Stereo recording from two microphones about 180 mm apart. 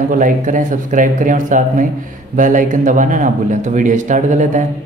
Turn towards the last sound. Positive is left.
turn(degrees=-45)  # may be behind; listen again after turning